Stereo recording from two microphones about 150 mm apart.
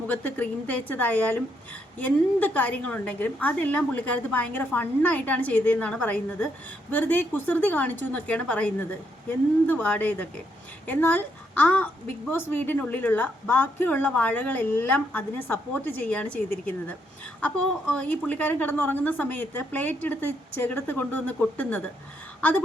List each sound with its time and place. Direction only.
0.1 s a woman's voice: 10° left (ahead or behind)
17.4 s a woman's voice: 10° left (ahead or behind)
22.4 s a sound: 10° left (ahead or behind)